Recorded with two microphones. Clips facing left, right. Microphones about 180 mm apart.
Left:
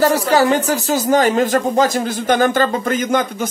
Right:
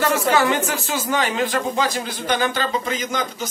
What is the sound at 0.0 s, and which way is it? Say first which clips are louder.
Speech: left 5 dB; 35° left (ahead or behind).